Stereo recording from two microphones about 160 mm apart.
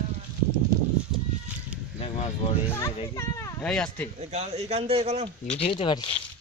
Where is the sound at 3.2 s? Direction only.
20° left (ahead or behind).